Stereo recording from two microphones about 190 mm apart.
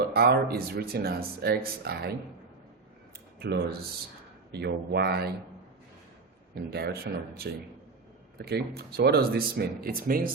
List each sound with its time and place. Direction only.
0.0 s speech: 55° right (ahead or behind)
3.4 s speech: 60° right (ahead or behind)
6.5 s speech: 55° right (ahead or behind)